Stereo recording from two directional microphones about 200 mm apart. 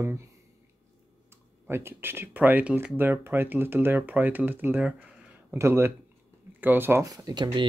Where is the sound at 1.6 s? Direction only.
10° right (ahead or behind).